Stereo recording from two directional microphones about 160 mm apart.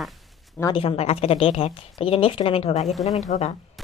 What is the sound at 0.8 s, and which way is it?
Speech, 40° left (ahead or behind).